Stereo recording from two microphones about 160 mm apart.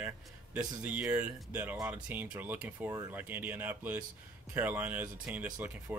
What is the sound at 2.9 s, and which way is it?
Speech, 25° right (ahead or behind).